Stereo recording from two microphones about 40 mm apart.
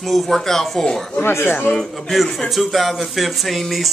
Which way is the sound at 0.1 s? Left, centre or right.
Centre.